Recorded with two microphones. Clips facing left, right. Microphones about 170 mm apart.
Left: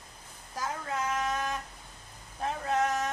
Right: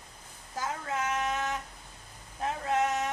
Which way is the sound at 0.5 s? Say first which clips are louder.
Right 1 dB; 25° right (ahead or behind).